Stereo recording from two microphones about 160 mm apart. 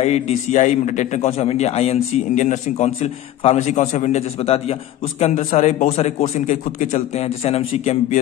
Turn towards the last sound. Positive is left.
turn(degrees=40)  # may be behind; listen again after turning